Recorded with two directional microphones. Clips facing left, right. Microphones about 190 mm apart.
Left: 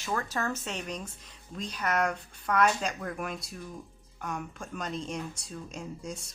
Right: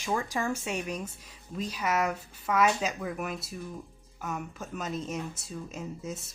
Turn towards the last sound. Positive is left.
turn(degrees=-5)  # may be behind; listen again after turning